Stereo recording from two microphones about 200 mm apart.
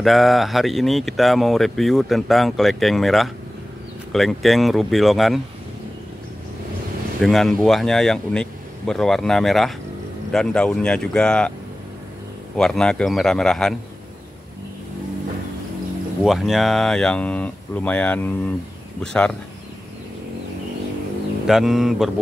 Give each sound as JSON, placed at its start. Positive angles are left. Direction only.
{"t": 0.0, "sound": "speech", "side_deg": 0}
{"t": 7.2, "sound": "speech", "side_deg": 0}
{"t": 12.5, "sound": "speech", "side_deg": 5}
{"t": 16.3, "sound": "speech", "side_deg": 0}
{"t": 21.5, "sound": "speech", "side_deg": 0}